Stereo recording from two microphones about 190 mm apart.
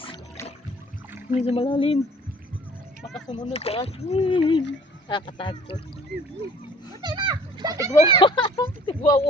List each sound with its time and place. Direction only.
1.4 s speech: 30° left (ahead or behind)
3.2 s speech: 25° left (ahead or behind)
7.0 s a child's voice: 25° right (ahead or behind)
8.0 s speech: 25° left (ahead or behind)